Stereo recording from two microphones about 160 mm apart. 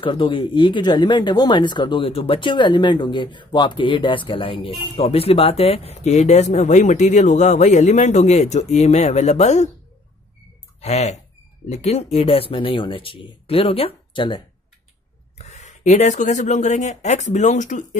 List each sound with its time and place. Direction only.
0.0 s speech: 30° left (ahead or behind)
10.8 s speech: 45° left (ahead or behind)
15.3 s speech: 45° left (ahead or behind)